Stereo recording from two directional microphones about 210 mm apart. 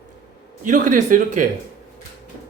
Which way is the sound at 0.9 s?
35° right (ahead or behind).